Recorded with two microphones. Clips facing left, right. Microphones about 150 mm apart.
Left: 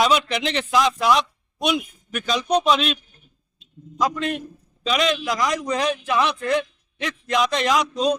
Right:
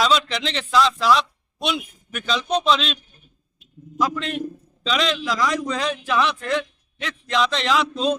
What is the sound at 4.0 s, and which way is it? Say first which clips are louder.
A man's voice: left 1 dB; 15° left (ahead or behind).